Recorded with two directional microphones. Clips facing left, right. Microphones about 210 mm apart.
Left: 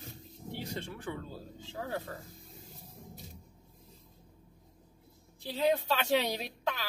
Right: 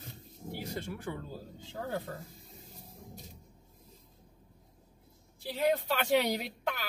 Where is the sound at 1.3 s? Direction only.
15° right (ahead or behind).